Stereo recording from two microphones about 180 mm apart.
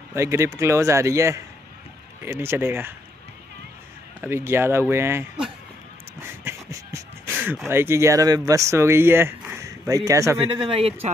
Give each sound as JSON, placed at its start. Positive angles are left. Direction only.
{"t": 0.1, "sound": "a man's voice", "side_deg": -15}
{"t": 4.2, "sound": "a man's voice", "side_deg": -15}
{"t": 6.4, "sound": "beatboxing", "side_deg": -15}
{"t": 7.6, "sound": "a man's voice", "side_deg": -15}
{"t": 10.5, "sound": "speech", "side_deg": -30}